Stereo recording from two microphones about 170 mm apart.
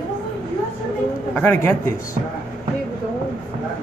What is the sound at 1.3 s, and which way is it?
Speech, 15° left (ahead or behind).